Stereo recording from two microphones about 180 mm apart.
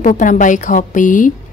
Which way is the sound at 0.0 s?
45° left (ahead or behind).